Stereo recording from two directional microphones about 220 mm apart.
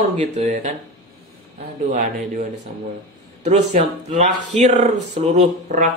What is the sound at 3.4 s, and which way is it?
Speech, 30° right (ahead or behind).